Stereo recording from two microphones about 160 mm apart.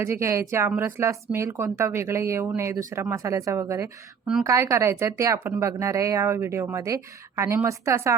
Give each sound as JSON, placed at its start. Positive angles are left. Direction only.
{"t": 0.0, "sound": "speech", "side_deg": -15}